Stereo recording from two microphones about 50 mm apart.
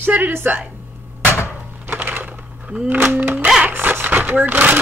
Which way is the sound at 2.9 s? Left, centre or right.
Right.